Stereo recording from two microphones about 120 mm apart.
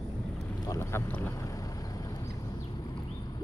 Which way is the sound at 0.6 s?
25° left (ahead or behind).